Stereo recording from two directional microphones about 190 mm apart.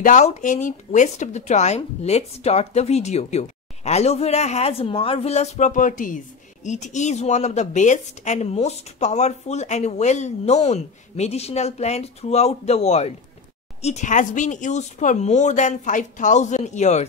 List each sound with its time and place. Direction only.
0.0 s speech: 40° left (ahead or behind)